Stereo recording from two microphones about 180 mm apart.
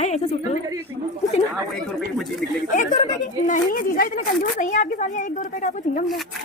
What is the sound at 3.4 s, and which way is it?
A woman's voice, 50° left (ahead or behind).